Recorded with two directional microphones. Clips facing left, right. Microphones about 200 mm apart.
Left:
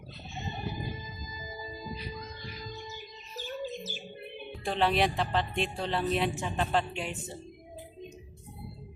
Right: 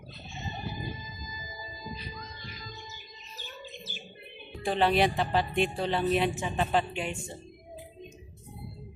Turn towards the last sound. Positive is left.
turn(degrees=0)  # may be behind; listen again after turning